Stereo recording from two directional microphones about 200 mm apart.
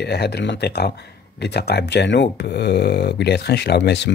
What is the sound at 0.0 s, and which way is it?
Speech, 55° left (ahead or behind).